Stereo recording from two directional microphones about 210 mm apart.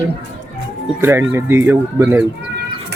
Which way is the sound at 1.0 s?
10° right (ahead or behind).